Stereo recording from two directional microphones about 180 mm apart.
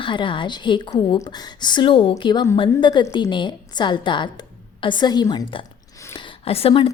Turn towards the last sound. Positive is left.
turn(degrees=30)  # may be behind; listen again after turning